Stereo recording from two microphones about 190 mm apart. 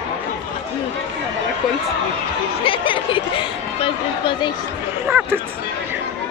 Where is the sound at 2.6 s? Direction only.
25° left (ahead or behind).